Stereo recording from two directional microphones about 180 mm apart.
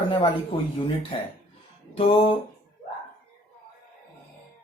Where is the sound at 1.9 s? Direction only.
35° left (ahead or behind).